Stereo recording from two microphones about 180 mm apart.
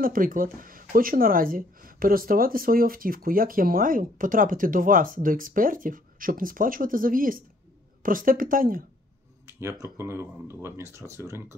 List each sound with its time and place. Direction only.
0.0 s speech: 50° right (ahead or behind)
9.5 s speech: 15° right (ahead or behind)